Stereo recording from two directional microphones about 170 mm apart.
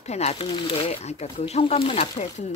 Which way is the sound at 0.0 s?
40° left (ahead or behind).